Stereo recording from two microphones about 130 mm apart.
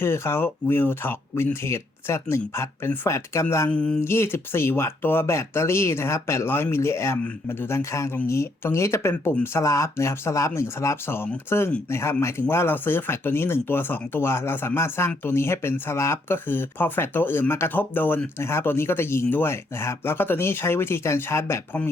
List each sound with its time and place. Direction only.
0.0 s speech: 20° left (ahead or behind)
3.7 s a sound: 10° left (ahead or behind)
4.0 s speech: 20° left (ahead or behind)